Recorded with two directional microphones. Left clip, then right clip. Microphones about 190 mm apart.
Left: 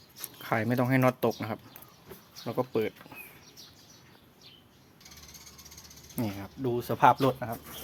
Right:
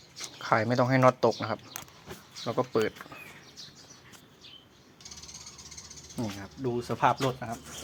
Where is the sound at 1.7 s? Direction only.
55° right (ahead or behind).